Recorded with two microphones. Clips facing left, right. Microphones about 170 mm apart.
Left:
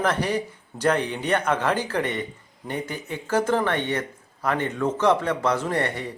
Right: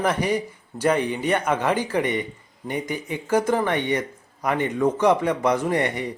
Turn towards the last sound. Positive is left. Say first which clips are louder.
# right 3 dB
turn(degrees=-15)  # may be behind; listen again after turning